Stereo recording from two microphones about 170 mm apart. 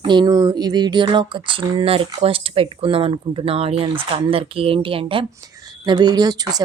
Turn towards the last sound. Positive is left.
turn(degrees=-25)  # may be behind; listen again after turning